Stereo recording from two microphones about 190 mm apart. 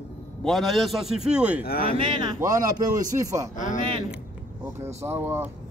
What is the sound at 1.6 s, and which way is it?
Speech, 55° left (ahead or behind).